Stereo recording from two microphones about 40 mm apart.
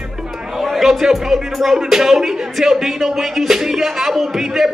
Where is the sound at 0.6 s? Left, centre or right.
Centre.